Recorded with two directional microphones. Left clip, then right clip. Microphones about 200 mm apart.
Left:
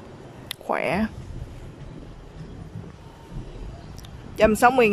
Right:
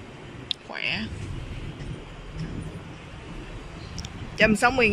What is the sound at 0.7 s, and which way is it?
Speech, 35° left (ahead or behind).